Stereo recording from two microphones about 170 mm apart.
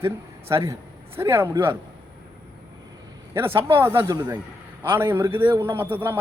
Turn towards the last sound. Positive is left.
turn(degrees=-15)  # may be behind; listen again after turning